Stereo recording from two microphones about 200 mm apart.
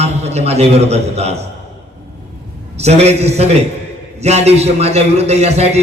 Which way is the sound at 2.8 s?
30° right (ahead or behind).